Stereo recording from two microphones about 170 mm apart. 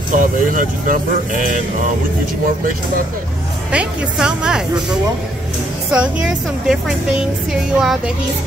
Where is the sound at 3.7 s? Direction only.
5° right (ahead or behind).